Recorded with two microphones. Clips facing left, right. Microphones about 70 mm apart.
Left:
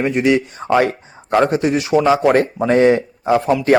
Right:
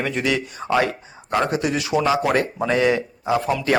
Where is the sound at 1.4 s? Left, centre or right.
Left.